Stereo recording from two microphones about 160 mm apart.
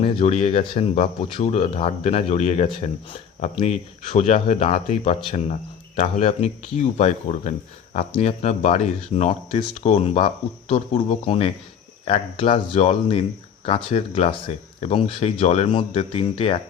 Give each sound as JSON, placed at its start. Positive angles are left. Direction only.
{"t": 0.0, "sound": "speech", "side_deg": 40}
{"t": 12.7, "sound": "speech", "side_deg": 45}